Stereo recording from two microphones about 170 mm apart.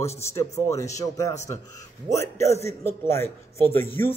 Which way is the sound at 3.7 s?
10° left (ahead or behind).